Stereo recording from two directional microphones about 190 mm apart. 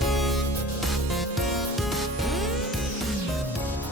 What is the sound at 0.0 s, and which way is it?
Music, centre (ahead or behind).